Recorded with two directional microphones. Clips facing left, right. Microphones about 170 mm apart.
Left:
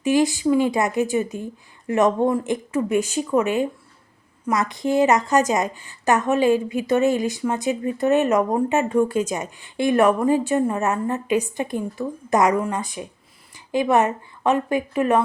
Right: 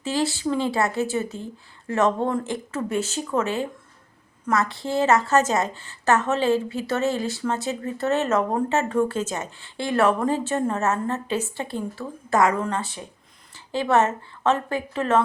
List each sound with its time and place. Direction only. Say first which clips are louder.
0.0 s a woman's voice: left 6 dB; 15° left (ahead or behind)